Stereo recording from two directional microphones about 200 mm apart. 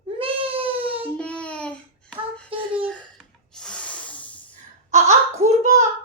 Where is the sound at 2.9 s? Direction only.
5° left (ahead or behind).